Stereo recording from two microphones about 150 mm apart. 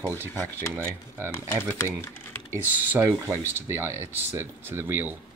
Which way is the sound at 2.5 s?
15° right (ahead or behind).